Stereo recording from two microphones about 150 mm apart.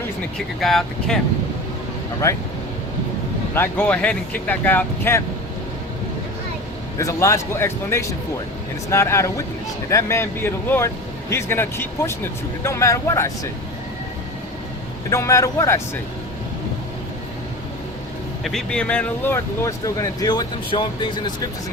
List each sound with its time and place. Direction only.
0.3 s speech: centre (ahead or behind)
2.2 s speech: 20° left (ahead or behind)
3.5 s speech: 15° left (ahead or behind)
7.0 s speech: 20° left (ahead or behind)
15.1 s speech: 20° left (ahead or behind)
18.4 s speech: 5° left (ahead or behind); by 21.3 s 30° left (ahead or behind)